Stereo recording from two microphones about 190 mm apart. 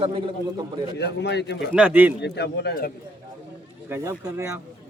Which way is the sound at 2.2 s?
60° left (ahead or behind).